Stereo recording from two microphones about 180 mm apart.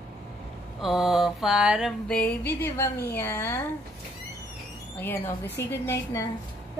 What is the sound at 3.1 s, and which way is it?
Speech, 15° left (ahead or behind).